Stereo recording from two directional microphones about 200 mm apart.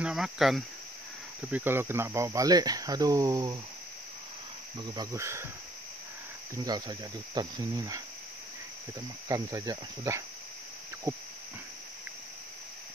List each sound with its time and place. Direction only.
0.0 s speech: centre (ahead or behind); by 3.5 s 20° right (ahead or behind)
4.7 s speech: 20° right (ahead or behind)
6.5 s speech: 20° right (ahead or behind)
9.3 s speech: 15° right (ahead or behind)